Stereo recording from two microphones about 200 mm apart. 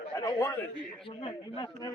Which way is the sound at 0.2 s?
15° left (ahead or behind).